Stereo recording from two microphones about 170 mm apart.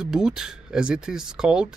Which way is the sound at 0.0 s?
5° right (ahead or behind).